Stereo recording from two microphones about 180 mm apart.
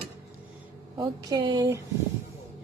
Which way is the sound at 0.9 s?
20° right (ahead or behind).